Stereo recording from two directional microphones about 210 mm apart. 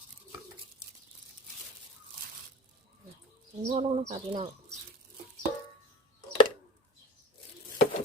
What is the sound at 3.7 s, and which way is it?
Speech, 30° right (ahead or behind).